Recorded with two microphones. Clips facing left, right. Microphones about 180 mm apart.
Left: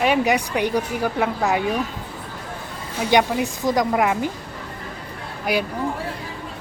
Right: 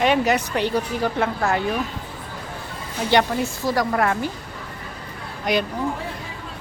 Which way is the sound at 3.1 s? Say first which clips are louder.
Left 1 dB; 15° left (ahead or behind).